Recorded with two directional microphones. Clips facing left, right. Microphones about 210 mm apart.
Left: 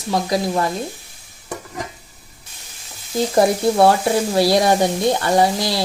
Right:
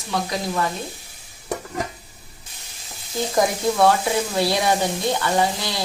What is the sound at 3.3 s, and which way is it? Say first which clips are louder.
Speech: left 5 dB; 30° left (ahead or behind).